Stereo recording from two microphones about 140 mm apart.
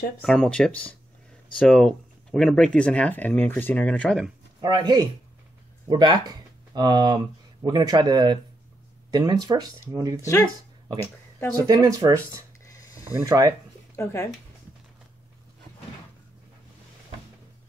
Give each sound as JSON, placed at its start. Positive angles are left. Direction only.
{"t": 0.2, "sound": "speech", "side_deg": 5}
{"t": 4.6, "sound": "speech", "side_deg": -30}
{"t": 11.5, "sound": "speech", "side_deg": -25}
{"t": 13.9, "sound": "speech", "side_deg": 20}